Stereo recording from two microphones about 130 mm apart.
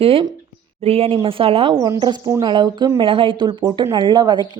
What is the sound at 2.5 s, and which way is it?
A woman's voice, 35° right (ahead or behind).